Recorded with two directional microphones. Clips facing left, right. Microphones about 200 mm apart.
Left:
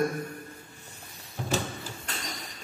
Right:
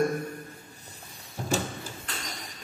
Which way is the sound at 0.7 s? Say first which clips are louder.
Even; 40° right (ahead or behind).